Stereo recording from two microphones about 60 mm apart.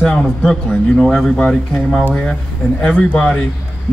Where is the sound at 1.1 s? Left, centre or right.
Centre.